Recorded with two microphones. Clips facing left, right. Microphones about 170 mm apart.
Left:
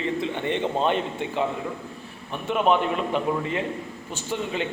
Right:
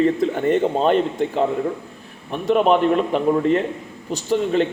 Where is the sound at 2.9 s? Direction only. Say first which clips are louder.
Right 7 dB; 40° right (ahead or behind).